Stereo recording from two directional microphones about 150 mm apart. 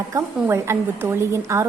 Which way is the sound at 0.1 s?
20° right (ahead or behind).